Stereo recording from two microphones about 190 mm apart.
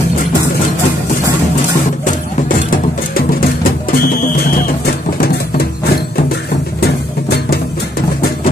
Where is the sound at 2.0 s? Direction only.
45° left (ahead or behind).